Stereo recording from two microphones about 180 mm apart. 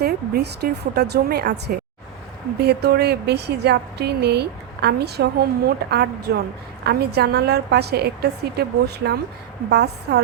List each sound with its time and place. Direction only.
0.0 s speech: 60° right (ahead or behind)
9.6 s speech: 65° right (ahead or behind)